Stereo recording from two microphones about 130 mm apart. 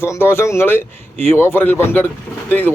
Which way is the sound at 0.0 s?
20° left (ahead or behind).